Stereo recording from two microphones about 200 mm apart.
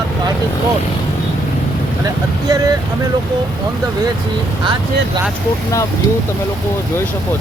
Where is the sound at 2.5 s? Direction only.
20° right (ahead or behind).